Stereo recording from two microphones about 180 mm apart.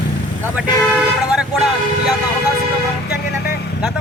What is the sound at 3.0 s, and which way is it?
Vehicle, 60° left (ahead or behind).